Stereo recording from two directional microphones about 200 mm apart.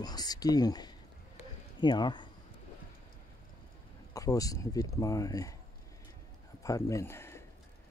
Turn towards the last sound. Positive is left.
turn(degrees=10)  # may be behind; listen again after turning